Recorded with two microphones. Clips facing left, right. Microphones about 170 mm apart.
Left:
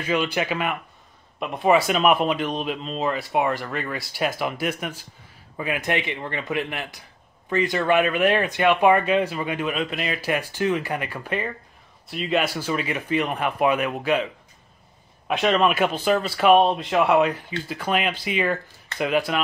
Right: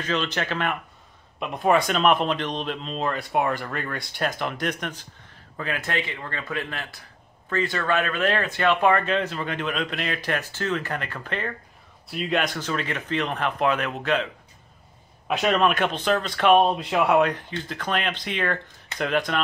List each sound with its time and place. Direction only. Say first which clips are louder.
0.0 s speech: left 3 dB; 10° left (ahead or behind)